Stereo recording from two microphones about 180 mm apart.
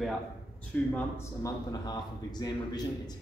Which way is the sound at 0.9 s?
15° left (ahead or behind).